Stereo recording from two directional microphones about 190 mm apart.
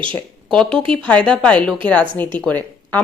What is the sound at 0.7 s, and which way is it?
Speech, 25° right (ahead or behind).